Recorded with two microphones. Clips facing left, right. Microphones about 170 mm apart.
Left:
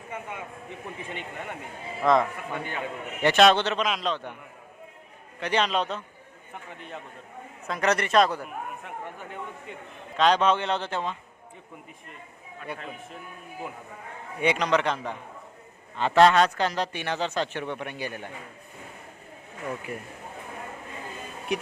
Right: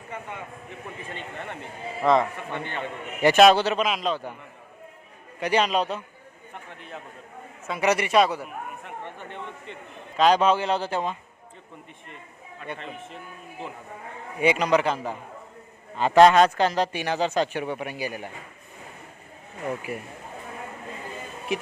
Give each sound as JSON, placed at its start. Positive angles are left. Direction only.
{"t": 0.1, "sound": "a man's voice", "side_deg": 10}
{"t": 3.2, "sound": "a man's voice", "side_deg": -10}
{"t": 5.4, "sound": "a man's voice", "side_deg": -10}
{"t": 10.2, "sound": "a man's voice", "side_deg": -10}
{"t": 12.5, "sound": "a man's voice", "side_deg": 5}
{"t": 14.4, "sound": "a man's voice", "side_deg": -5}
{"t": 19.9, "sound": "a man's voice", "side_deg": -10}
{"t": 21.5, "sound": "speech", "side_deg": 0}